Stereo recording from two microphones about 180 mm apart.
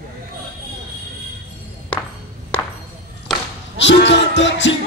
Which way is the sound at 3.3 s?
Centre (ahead or behind).